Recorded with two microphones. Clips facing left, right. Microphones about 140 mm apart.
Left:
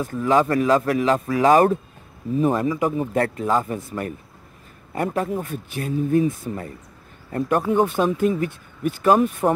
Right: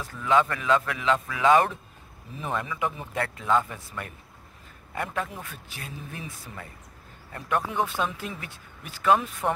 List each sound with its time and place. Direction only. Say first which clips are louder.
0.0 s speech: left 5 dB; 40° left (ahead or behind)